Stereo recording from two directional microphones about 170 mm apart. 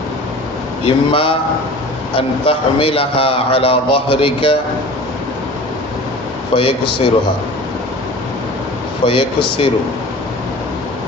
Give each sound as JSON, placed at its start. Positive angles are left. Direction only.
{"t": 0.9, "sound": "a man's voice", "side_deg": 30}
{"t": 6.6, "sound": "a man's voice", "side_deg": 30}
{"t": 9.0, "sound": "a man's voice", "side_deg": 30}